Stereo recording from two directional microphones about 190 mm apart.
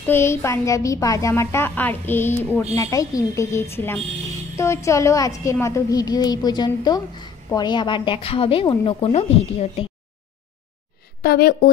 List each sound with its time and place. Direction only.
0.0 s a woman's voice: 15° left (ahead or behind); by 9.8 s 35° left (ahead or behind)
11.2 s a woman's voice: 55° left (ahead or behind)